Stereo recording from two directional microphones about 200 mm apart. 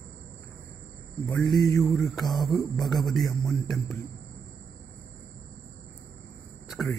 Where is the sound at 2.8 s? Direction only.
Centre (ahead or behind).